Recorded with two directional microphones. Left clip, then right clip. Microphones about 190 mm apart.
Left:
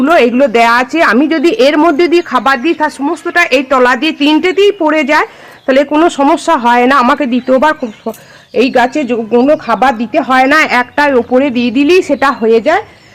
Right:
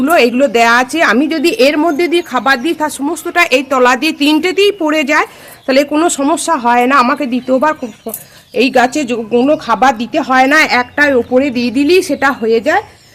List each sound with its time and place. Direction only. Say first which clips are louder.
0.0 s a woman's voice: left 2 dB; 25° left (ahead or behind)